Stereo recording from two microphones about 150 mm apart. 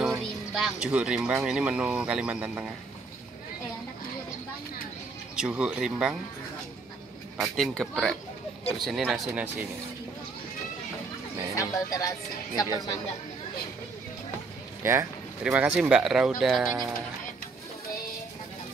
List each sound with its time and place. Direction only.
0.0 s speech: centre (ahead or behind)
5.3 s speech: 5° right (ahead or behind)
7.3 s speech: centre (ahead or behind)
11.5 s speech: 25° left (ahead or behind)
14.8 s speech: 15° right (ahead or behind)